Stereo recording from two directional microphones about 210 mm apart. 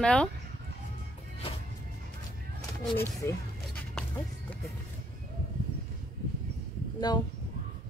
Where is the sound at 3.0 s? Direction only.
10° left (ahead or behind).